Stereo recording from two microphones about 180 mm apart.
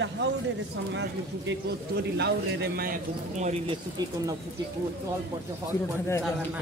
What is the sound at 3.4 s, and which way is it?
Speech, 40° right (ahead or behind).